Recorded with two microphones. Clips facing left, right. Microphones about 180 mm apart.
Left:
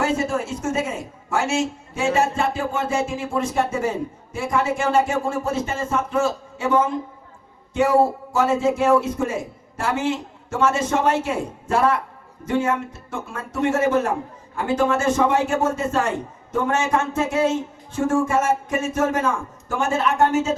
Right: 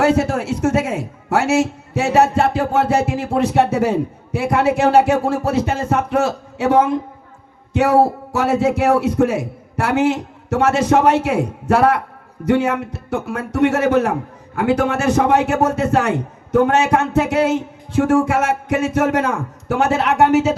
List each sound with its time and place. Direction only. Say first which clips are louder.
0.0 s a man's voice: right 6 dB; 70° right (ahead or behind)
8.3 s a man's voice: right 2 dB; 70° right (ahead or behind)